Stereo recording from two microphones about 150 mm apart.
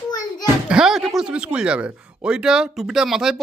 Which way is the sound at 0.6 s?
5° right (ahead or behind).